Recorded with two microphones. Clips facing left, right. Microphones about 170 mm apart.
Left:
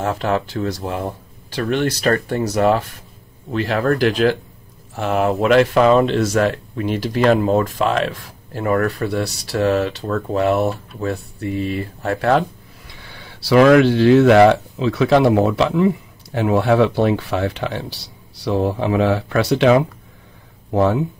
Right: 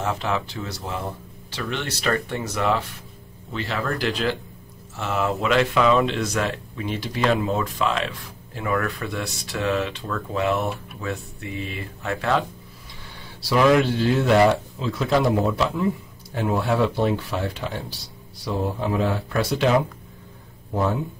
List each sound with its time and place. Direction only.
0.0 s speech: 50° left (ahead or behind)
13.0 s speech: 75° left (ahead or behind)